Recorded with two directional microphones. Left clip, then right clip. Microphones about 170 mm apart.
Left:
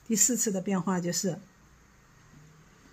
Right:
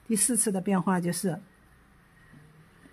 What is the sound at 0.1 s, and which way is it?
Speech, 15° right (ahead or behind).